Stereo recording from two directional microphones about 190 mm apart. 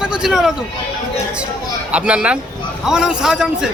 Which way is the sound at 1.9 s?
5° right (ahead or behind).